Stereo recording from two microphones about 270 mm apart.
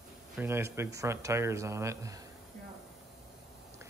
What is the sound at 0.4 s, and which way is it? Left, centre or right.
Speech, centre.